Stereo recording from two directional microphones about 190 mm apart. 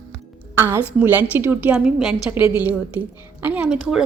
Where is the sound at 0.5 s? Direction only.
15° right (ahead or behind).